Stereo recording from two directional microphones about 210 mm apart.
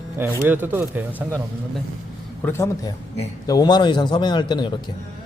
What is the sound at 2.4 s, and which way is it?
A man's voice, 10° left (ahead or behind).